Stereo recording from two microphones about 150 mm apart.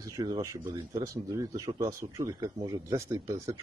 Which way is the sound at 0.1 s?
25° right (ahead or behind).